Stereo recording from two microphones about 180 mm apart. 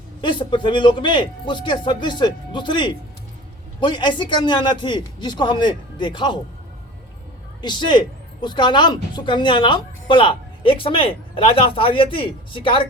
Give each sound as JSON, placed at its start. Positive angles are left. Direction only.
{"t": 0.2, "sound": "speech", "side_deg": 25}
{"t": 7.6, "sound": "speech", "side_deg": 25}